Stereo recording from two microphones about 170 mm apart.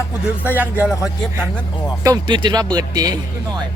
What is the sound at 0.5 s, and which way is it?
Music, 10° right (ahead or behind).